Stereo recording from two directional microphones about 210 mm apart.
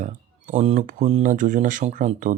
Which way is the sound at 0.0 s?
35° right (ahead or behind).